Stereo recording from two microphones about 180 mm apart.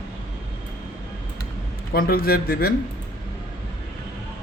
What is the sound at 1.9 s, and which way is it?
Speech, 55° left (ahead or behind).